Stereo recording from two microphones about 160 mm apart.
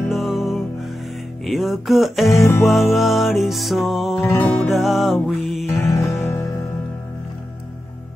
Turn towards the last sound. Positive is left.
turn(degrees=15)  # may be behind; listen again after turning